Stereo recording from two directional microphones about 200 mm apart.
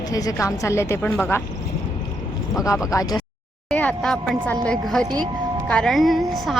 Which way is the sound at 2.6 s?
15° left (ahead or behind).